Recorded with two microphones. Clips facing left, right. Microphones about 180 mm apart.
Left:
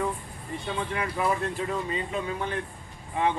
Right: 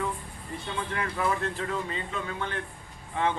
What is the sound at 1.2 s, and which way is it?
A man's voice, 15° left (ahead or behind).